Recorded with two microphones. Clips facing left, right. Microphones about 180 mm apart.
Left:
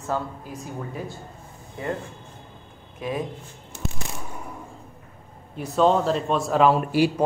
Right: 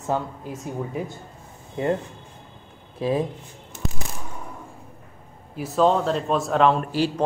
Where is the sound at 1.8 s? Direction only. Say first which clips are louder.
Right 6 dB; 25° right (ahead or behind).